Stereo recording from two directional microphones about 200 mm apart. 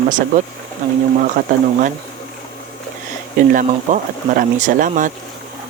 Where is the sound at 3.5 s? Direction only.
45° right (ahead or behind).